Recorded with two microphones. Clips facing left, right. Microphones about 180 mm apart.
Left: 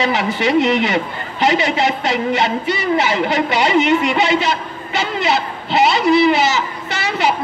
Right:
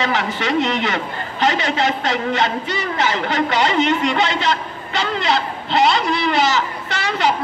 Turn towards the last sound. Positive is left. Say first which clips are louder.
# left 1 dB
turn(degrees=5)  # may be behind; listen again after turning